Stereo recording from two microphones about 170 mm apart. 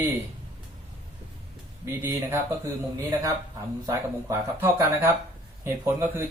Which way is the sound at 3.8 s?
15° right (ahead or behind).